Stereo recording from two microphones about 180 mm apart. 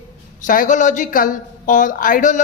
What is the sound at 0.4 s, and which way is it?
A man's voice, 45° left (ahead or behind).